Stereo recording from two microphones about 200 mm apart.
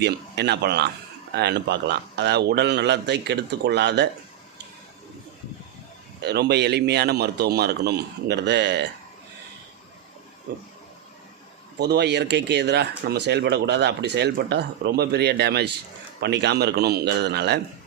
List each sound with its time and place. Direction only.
0.0 s speech: 55° right (ahead or behind)
6.2 s speech: 55° right (ahead or behind)
11.8 s speech: 55° right (ahead or behind)